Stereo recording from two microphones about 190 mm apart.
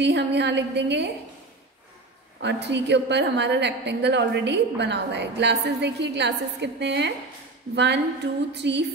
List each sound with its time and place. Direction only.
0.0 s a woman's voice: 65° right (ahead or behind)
2.4 s a woman's voice: 65° right (ahead or behind)